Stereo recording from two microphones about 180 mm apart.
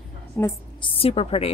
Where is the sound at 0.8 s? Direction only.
30° left (ahead or behind).